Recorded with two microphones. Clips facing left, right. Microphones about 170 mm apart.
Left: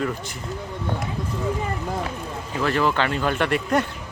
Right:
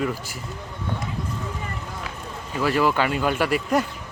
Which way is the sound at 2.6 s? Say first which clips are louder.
Right 1 dB; 5° right (ahead or behind).